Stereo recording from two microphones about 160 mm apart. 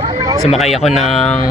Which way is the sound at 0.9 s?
Centre (ahead or behind).